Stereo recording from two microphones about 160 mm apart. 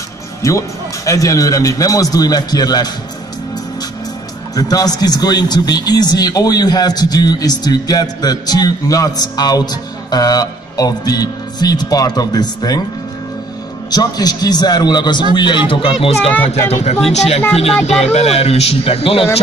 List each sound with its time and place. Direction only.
0.4 s speech: 20° left (ahead or behind)
4.6 s speech: 25° left (ahead or behind)
13.8 s speech: 25° left (ahead or behind)